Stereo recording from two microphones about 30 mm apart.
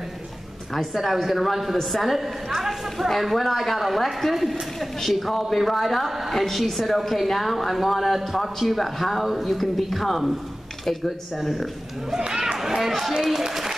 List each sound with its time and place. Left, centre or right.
1.1 s a woman's voice: centre
12.2 s speech: right
12.5 s a sound: centre
13.4 s speech: centre